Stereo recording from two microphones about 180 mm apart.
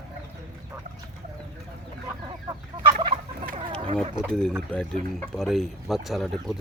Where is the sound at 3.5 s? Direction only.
35° right (ahead or behind).